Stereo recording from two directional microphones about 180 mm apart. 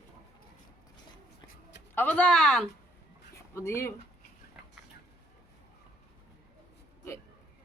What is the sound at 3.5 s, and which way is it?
Speech, 15° left (ahead or behind).